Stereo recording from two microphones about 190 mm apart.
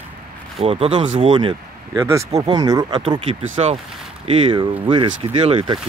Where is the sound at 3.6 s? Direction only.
30° right (ahead or behind).